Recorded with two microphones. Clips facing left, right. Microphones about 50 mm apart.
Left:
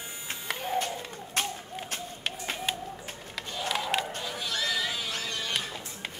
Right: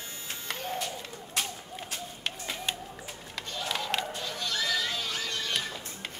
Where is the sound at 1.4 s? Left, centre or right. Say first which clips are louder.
Left 2 dB; left.